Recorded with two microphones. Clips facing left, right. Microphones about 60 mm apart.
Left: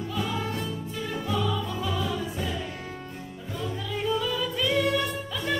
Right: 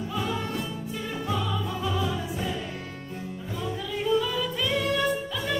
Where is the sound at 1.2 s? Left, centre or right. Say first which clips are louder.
Left 1 dB; centre.